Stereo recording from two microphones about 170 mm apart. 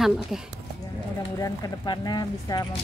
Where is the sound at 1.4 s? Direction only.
20° left (ahead or behind).